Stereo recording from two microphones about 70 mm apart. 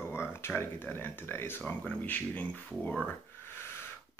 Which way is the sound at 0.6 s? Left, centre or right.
Left.